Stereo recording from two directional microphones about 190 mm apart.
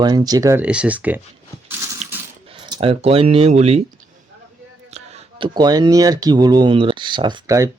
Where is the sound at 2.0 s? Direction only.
35° right (ahead or behind).